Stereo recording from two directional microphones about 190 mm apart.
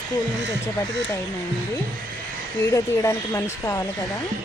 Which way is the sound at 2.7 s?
15° left (ahead or behind).